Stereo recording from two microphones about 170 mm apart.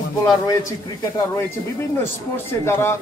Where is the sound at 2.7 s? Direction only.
15° left (ahead or behind).